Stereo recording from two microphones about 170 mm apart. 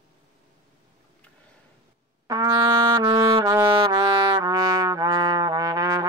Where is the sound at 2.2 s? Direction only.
20° right (ahead or behind).